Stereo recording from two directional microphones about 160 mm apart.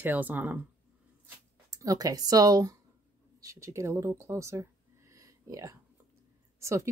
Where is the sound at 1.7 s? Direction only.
20° right (ahead or behind).